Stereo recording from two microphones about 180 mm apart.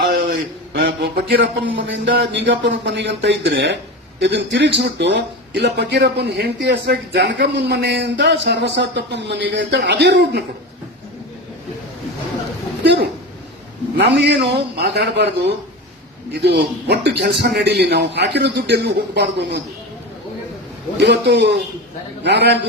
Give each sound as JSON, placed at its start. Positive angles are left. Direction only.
{"t": 0.7, "sound": "speech", "side_deg": -70}
{"t": 12.8, "sound": "speech", "side_deg": -70}
{"t": 21.0, "sound": "speech", "side_deg": -70}